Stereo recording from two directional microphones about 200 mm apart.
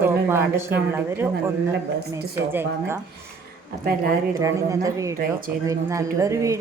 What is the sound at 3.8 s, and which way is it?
Speech, 45° right (ahead or behind).